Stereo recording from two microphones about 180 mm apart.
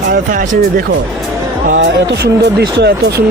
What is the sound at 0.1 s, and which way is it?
Speech, 50° right (ahead or behind).